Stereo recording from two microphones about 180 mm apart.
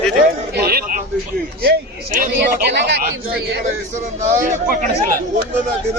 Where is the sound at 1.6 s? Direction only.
55° right (ahead or behind).